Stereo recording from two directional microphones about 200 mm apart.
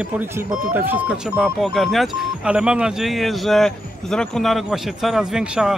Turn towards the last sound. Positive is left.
turn(degrees=-5)  # may be behind; listen again after turning